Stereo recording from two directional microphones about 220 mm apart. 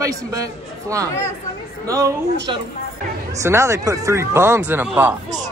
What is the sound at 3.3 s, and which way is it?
Speech, 15° right (ahead or behind).